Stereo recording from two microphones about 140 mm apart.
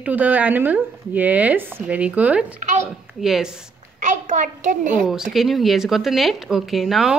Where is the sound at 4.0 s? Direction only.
60° right (ahead or behind).